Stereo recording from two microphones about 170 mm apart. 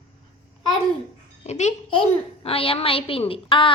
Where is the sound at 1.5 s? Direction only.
40° left (ahead or behind).